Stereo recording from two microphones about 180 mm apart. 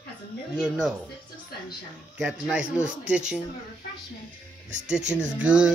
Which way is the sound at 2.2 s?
5° right (ahead or behind).